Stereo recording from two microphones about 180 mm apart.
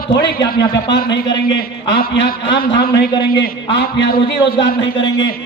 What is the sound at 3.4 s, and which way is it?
Speech, 80° left.